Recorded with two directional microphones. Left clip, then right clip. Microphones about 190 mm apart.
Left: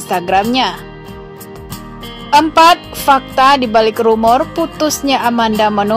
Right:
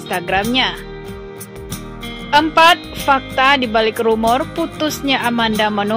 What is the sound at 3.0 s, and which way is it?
Speech, 25° left (ahead or behind).